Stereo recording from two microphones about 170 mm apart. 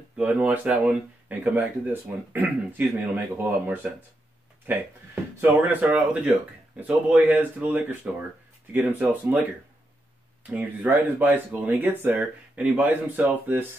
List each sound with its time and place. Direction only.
0.2 s speech: 5° right (ahead or behind)
10.5 s speech: 10° right (ahead or behind)